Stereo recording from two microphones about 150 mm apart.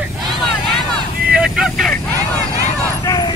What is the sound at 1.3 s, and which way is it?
Vehicle, 5° right (ahead or behind).